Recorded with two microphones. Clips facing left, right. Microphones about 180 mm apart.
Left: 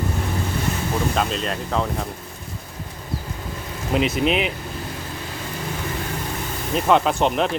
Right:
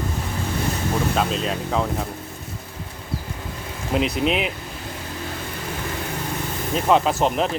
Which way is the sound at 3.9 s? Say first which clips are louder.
Left 1 dB; centre (ahead or behind).